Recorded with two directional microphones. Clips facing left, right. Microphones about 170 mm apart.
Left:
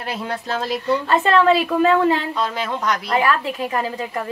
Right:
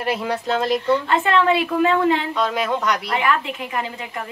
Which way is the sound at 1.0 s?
40° left (ahead or behind).